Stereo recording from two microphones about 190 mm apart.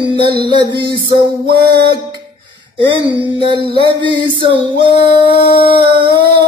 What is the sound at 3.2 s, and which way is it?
Music, 25° right (ahead or behind).